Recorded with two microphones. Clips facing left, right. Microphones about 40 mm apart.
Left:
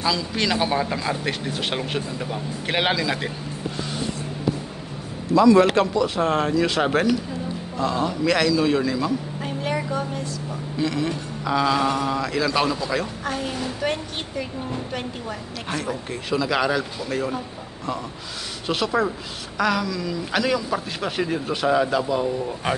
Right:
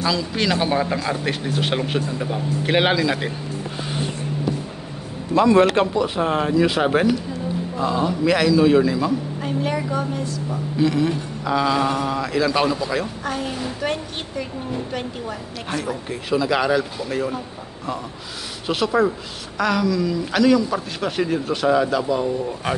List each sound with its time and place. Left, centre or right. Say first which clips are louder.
0.0 s speech: right 2 dB; centre
5.3 s a man's voice: even; right
5.8 s speech: right 1 dB; centre
18.7 s speech: right 3 dB; centre